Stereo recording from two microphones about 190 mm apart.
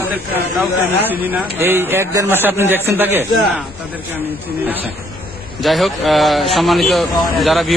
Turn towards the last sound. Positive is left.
turn(degrees=0)  # may be behind; listen again after turning